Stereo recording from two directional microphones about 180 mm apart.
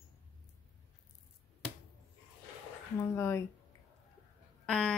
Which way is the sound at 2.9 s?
15° left (ahead or behind).